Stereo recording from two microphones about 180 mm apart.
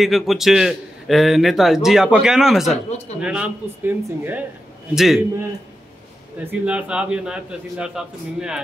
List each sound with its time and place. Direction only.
0.0 s a man's voice: centre (ahead or behind)
2.7 s a man's voice: 35° left (ahead or behind)
3.2 s a man's voice: 5° right (ahead or behind)
6.6 s a man's voice: 5° right (ahead or behind)